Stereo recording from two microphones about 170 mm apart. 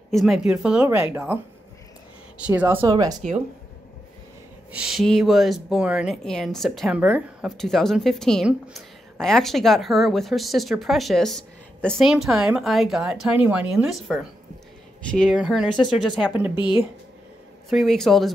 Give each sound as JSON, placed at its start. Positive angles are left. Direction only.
{"t": 0.1, "sound": "speech", "side_deg": 0}
{"t": 2.8, "sound": "speech", "side_deg": -25}
{"t": 4.7, "sound": "speech", "side_deg": 0}
{"t": 17.6, "sound": "speech", "side_deg": 0}